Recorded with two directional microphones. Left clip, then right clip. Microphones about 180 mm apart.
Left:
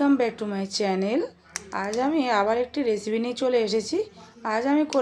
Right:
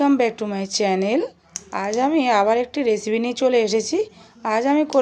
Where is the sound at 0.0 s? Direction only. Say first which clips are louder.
Right 4 dB; 20° right (ahead or behind).